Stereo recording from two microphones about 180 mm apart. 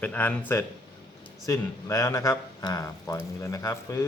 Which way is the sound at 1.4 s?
15° left (ahead or behind).